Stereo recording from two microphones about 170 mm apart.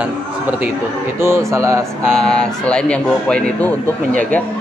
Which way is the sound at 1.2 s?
15° right (ahead or behind).